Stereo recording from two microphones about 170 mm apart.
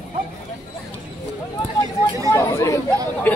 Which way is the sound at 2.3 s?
15° left (ahead or behind).